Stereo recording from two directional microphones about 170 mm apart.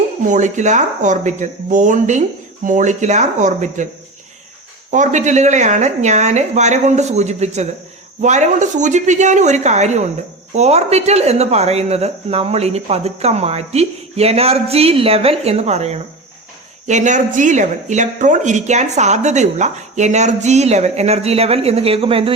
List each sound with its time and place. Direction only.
0.3 s speech: 45° right (ahead or behind)
4.9 s speech: 45° right (ahead or behind)